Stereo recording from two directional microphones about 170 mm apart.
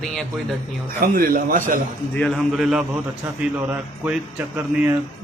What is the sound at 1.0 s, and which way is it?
Speech, 55° right (ahead or behind).